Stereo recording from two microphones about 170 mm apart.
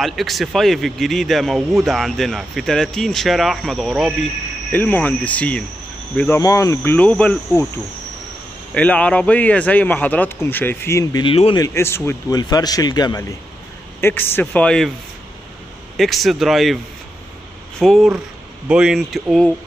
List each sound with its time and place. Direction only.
0.0 s speech: centre (ahead or behind)
4.7 s speech: 10° left (ahead or behind)
8.7 s speech: 5° left (ahead or behind)
11.2 s speech: 30° left (ahead or behind)
11.6 s a man's voice: 15° left (ahead or behind)
14.0 s speech: 15° left (ahead or behind)
16.0 s speech: centre (ahead or behind)